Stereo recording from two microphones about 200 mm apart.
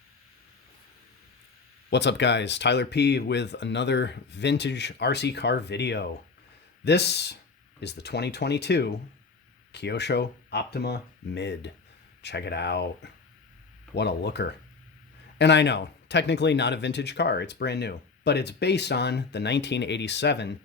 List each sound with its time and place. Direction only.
1.9 s speech: 60° left (ahead or behind)